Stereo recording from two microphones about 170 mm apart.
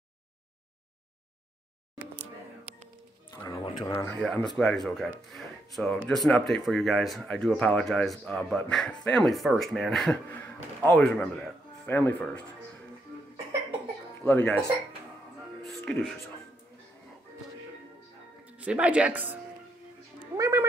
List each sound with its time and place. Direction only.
3.4 s a sound: 25° left (ahead or behind)
3.9 s speech: 10° left (ahead or behind)
14.2 s speech: 10° left (ahead or behind)
15.6 s music: centre (ahead or behind)
18.4 s speech: 10° right (ahead or behind)
20.3 s music: 20° right (ahead or behind)